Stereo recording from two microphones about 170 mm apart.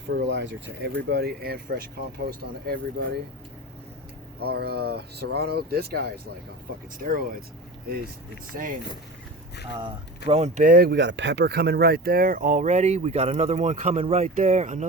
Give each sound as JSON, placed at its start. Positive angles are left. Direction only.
{"t": 0.1, "sound": "speech", "side_deg": -90}
{"t": 1.1, "sound": "speech", "side_deg": -70}
{"t": 4.4, "sound": "speech", "side_deg": -70}
{"t": 7.0, "sound": "speech", "side_deg": -55}
{"t": 10.2, "sound": "speech", "side_deg": -40}
{"t": 10.6, "sound": "speech", "side_deg": -60}